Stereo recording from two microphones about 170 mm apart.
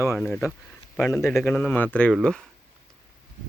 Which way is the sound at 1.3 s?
5° left (ahead or behind).